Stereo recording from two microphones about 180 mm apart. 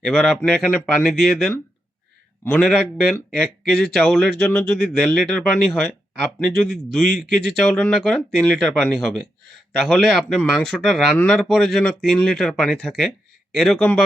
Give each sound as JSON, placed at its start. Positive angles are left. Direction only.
{"t": 0.0, "sound": "speech", "side_deg": 0}
{"t": 2.4, "sound": "a man's voice", "side_deg": 15}
{"t": 6.6, "sound": "speech", "side_deg": 0}